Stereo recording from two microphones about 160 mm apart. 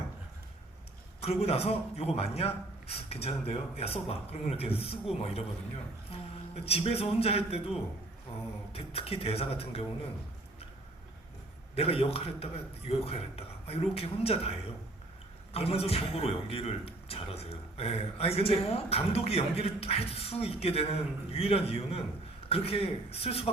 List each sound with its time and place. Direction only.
1.2 s a man's voice: 40° left (ahead or behind)
11.7 s a man's voice: 40° left (ahead or behind)